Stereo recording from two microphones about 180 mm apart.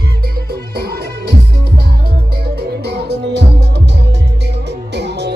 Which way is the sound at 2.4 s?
65° right (ahead or behind).